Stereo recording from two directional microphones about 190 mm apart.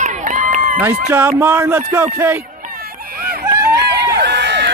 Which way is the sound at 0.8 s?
10° right (ahead or behind).